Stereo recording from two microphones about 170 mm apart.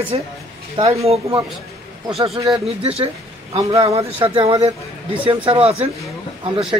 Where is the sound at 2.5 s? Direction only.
35° right (ahead or behind).